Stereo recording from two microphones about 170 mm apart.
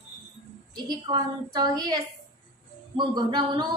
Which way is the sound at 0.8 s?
25° right (ahead or behind).